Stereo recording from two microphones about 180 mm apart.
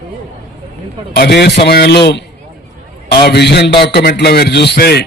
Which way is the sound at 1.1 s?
65° left (ahead or behind).